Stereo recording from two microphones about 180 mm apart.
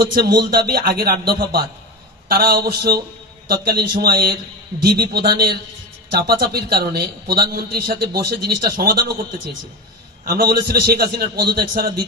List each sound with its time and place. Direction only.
0.1 s a man's voice: 60° right (ahead or behind)